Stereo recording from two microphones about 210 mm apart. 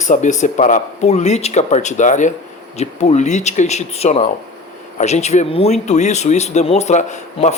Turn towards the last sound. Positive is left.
turn(degrees=35)  # may be behind; listen again after turning